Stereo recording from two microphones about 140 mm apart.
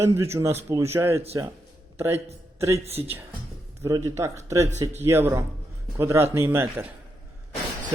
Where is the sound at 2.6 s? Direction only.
20° right (ahead or behind).